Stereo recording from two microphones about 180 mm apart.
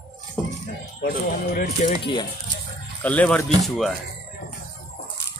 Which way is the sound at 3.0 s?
10° left (ahead or behind).